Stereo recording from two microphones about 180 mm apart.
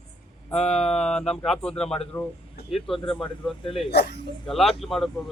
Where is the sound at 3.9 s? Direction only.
65° left (ahead or behind).